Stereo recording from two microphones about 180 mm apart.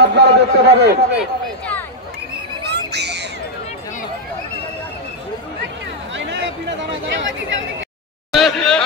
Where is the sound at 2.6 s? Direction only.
70° right (ahead or behind).